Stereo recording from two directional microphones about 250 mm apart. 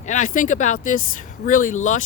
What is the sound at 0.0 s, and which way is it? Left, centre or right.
Speech, left.